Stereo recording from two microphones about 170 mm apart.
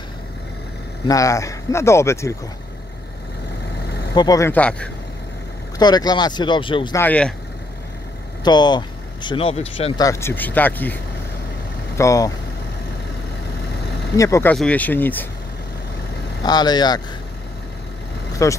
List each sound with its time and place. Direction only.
1.0 s speech: 20° left (ahead or behind)
3.8 s vehicle: 70° left (ahead or behind)
4.1 s speech: 20° left (ahead or behind)
4.5 s speech: 5° left (ahead or behind)
5.8 s speech: 25° left (ahead or behind)
7.0 s speech: 10° left (ahead or behind)
8.5 s speech: 25° left (ahead or behind)
9.9 s speech: 20° left (ahead or behind)
12.0 s speech: 20° left (ahead or behind)
14.1 s speech: 20° left (ahead or behind)
14.5 s speech: 5° left (ahead or behind)
16.4 s speech: 25° left (ahead or behind)
18.4 s speech: 20° left (ahead or behind)